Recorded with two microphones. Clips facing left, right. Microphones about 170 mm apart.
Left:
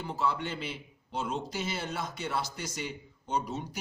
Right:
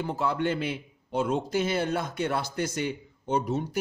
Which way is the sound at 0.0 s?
55° right (ahead or behind).